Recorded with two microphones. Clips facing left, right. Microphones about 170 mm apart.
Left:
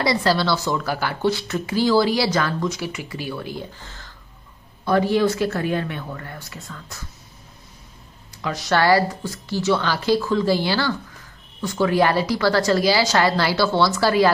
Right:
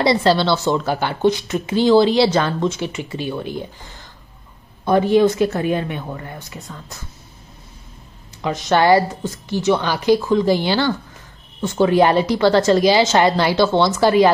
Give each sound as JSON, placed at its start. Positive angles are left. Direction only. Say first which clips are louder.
{"t": 0.0, "sound": "a woman's voice", "louder": "right 4 dB", "side_deg": -25}
{"t": 8.4, "sound": "a woman's voice", "louder": "right 4 dB", "side_deg": -20}